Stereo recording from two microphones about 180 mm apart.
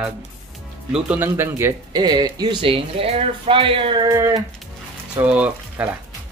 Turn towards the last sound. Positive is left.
turn(degrees=-10)  # may be behind; listen again after turning